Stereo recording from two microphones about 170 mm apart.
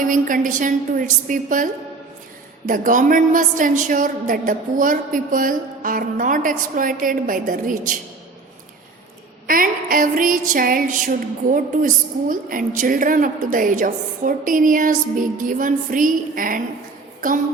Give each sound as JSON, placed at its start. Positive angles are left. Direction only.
{"t": 0.0, "sound": "a woman's voice", "side_deg": -50}
{"t": 9.5, "sound": "a woman's voice", "side_deg": -55}